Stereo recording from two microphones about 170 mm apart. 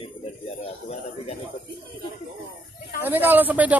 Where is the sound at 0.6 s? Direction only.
35° left (ahead or behind).